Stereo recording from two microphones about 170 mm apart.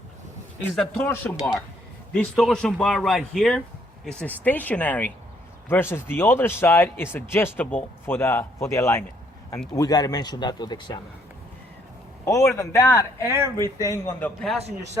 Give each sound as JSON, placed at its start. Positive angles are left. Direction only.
{"t": 1.0, "sound": "a man's voice", "side_deg": 15}
{"t": 12.2, "sound": "a man's voice", "side_deg": 15}
{"t": 13.2, "sound": "speech", "side_deg": -15}
{"t": 13.8, "sound": "a man's voice", "side_deg": 15}